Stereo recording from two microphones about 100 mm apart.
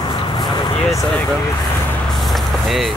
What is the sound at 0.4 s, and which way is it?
Vehicle, 40° left (ahead or behind).